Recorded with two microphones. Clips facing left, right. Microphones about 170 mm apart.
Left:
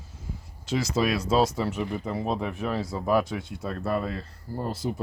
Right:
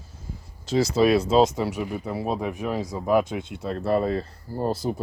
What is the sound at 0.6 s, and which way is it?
Speech, 35° right (ahead or behind).